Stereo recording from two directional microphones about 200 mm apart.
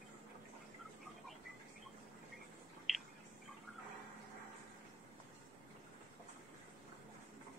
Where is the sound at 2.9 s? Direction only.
Centre (ahead or behind).